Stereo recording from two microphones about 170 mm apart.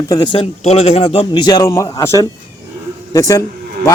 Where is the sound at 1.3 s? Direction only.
25° left (ahead or behind).